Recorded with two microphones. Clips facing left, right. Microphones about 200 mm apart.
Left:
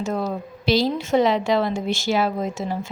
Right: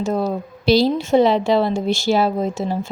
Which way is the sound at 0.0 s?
35° right (ahead or behind).